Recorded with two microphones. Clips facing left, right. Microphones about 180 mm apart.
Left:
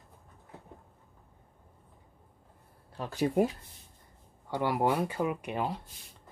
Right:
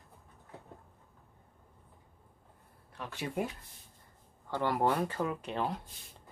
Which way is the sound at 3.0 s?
40° left (ahead or behind).